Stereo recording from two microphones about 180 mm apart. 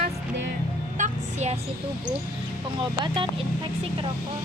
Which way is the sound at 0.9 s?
40° right (ahead or behind).